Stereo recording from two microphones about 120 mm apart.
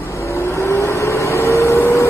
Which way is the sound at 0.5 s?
20° left (ahead or behind).